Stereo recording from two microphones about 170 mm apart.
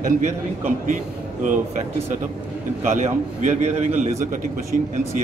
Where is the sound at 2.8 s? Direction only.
40° right (ahead or behind).